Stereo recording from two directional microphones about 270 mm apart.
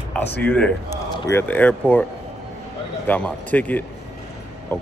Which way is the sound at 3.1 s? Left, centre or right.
Centre.